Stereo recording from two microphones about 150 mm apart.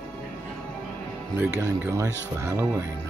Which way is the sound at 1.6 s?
20° right (ahead or behind).